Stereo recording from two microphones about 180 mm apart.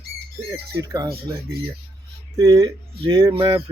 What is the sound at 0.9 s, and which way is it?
Speech, 20° right (ahead or behind).